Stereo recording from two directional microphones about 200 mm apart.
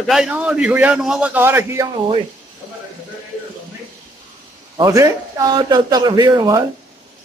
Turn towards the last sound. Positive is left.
turn(degrees=-20)  # may be behind; listen again after turning